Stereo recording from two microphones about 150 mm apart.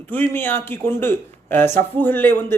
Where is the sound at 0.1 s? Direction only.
15° left (ahead or behind).